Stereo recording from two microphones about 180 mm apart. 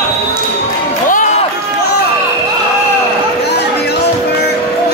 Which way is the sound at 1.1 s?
45° left (ahead or behind).